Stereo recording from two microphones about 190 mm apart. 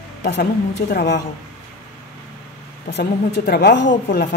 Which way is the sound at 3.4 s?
55° left (ahead or behind).